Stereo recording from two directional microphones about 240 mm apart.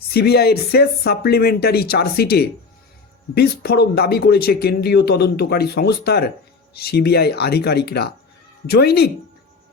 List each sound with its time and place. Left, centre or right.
0.1 s speech: left